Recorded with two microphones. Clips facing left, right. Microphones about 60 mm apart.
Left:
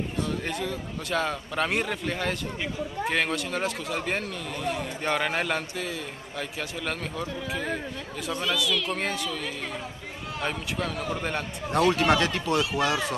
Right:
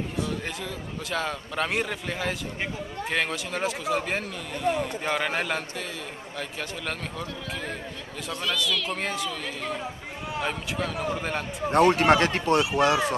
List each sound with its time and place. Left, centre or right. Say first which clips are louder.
0.2 s speech: left 2 dB; centre
6.9 s speech: left 2 dB; centre
11.1 s speech: even; centre
11.7 s speech: right 3 dB; right